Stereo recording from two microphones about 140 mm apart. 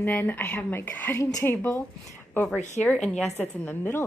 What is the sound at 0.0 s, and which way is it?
A woman's voice, 15° left (ahead or behind).